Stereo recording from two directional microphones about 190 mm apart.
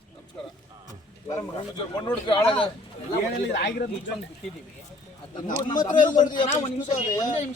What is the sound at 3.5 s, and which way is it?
Speech, 60° left (ahead or behind).